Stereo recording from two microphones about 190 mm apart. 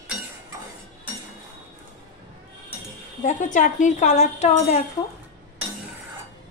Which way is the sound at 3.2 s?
40° left (ahead or behind).